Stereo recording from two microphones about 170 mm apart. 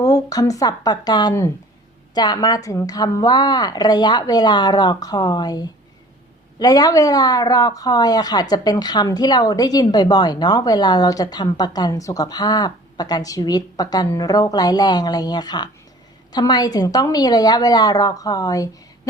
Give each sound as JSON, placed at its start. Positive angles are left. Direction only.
{"t": 0.0, "sound": "speech", "side_deg": 20}